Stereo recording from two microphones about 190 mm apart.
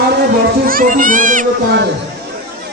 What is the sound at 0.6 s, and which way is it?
Speech, 45° right (ahead or behind).